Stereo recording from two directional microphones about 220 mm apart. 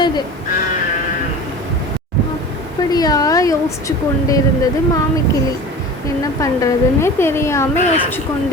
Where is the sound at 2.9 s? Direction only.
15° left (ahead or behind).